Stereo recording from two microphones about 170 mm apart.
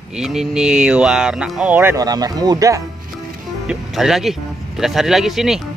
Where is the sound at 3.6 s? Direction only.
5° right (ahead or behind).